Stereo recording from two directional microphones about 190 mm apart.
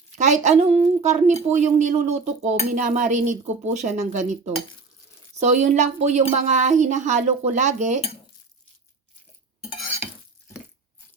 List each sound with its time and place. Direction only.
0.2 s a woman's voice: 40° right (ahead or behind)